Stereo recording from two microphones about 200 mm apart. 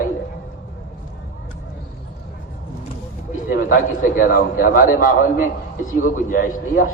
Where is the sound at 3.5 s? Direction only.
45° left (ahead or behind).